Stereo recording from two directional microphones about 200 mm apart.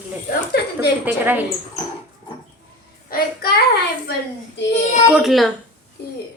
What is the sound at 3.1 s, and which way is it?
Child singing, 50° left (ahead or behind).